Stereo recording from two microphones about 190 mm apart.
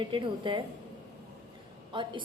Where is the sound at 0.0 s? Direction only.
25° right (ahead or behind).